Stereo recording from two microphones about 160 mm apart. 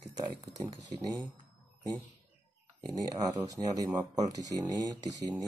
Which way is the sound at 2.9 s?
20° right (ahead or behind).